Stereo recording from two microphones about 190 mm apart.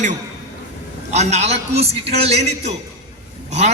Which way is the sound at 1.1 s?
35° right (ahead or behind).